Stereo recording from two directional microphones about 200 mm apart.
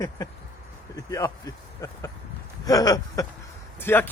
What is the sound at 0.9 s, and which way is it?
Speech, 15° left (ahead or behind).